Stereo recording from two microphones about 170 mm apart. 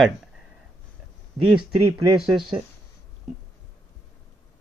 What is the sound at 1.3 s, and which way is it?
Speech, 30° right (ahead or behind).